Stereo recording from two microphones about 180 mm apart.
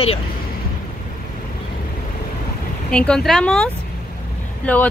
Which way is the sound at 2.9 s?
5° left (ahead or behind).